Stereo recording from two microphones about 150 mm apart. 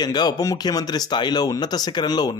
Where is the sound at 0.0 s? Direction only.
25° left (ahead or behind).